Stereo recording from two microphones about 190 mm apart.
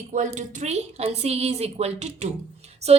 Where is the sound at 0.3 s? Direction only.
40° right (ahead or behind).